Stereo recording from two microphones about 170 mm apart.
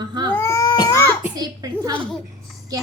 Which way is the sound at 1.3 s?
20° right (ahead or behind).